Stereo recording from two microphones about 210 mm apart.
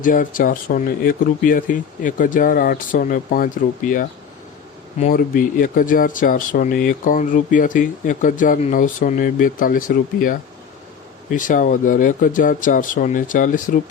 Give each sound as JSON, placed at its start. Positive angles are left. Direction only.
{"t": 0.0, "sound": "speech", "side_deg": 40}